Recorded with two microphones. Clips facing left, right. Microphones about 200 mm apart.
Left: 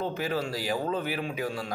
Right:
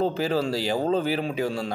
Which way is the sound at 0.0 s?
30° right (ahead or behind).